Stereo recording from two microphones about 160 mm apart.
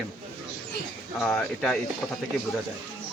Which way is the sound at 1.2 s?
5° left (ahead or behind).